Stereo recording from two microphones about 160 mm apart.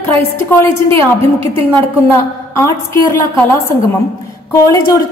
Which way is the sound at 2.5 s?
15° left (ahead or behind).